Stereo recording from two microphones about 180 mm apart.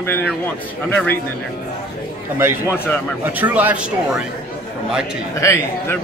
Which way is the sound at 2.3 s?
10° right (ahead or behind).